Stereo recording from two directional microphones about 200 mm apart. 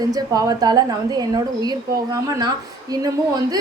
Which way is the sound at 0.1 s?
20° right (ahead or behind).